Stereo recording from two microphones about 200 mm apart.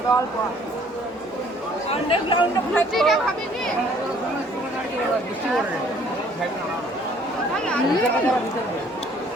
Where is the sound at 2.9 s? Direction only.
Centre (ahead or behind).